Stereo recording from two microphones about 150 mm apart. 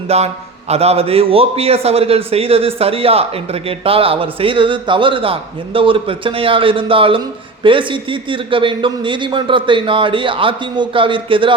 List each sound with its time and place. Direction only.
0.1 s a man's voice: 45° right (ahead or behind)